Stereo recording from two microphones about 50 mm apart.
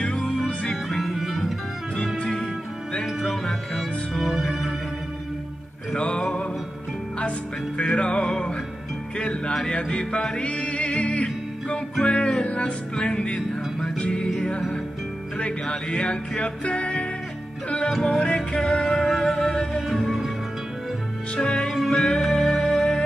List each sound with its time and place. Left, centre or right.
0.2 s music: centre
2.1 s music: centre
3.1 s music: centre
5.9 s music: left
15.3 s music: centre
17.8 s music: centre
18.2 s music: left
19.9 s music: centre
21.4 s music: centre
21.6 s music: centre